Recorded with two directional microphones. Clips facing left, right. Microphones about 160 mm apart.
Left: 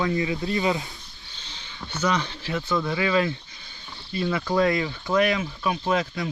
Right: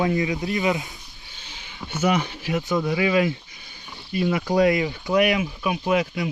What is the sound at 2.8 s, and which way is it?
Speech, 20° right (ahead or behind).